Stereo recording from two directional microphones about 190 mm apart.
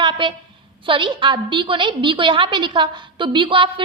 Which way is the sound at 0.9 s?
25° right (ahead or behind).